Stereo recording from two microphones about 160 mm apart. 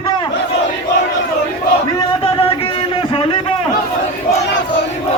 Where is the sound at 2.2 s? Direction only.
35° left (ahead or behind).